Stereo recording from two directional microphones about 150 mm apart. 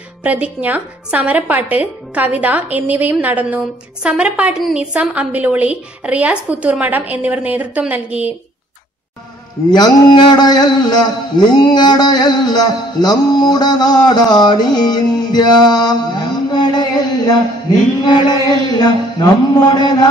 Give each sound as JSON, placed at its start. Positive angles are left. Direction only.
{"t": 0.2, "sound": "a woman's voice", "side_deg": -10}
{"t": 9.7, "sound": "a man's voice", "side_deg": 30}